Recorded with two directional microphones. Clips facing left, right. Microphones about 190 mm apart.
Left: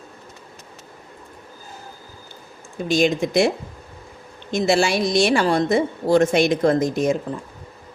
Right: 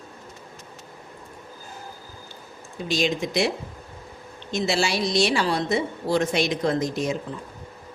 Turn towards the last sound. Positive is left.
turn(degrees=50)  # may be behind; listen again after turning